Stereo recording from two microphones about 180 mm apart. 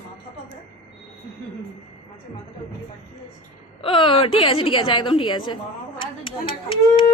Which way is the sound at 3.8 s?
30° left (ahead or behind).